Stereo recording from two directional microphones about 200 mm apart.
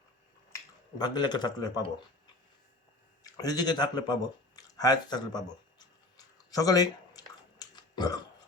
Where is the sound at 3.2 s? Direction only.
20° left (ahead or behind).